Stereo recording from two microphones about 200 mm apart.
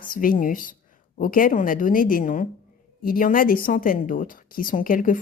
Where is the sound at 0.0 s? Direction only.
45° left (ahead or behind).